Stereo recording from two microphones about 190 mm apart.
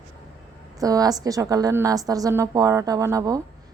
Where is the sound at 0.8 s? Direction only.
20° right (ahead or behind).